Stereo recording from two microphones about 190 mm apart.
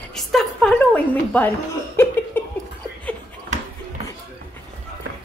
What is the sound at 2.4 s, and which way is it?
Chuckle, 10° left (ahead or behind).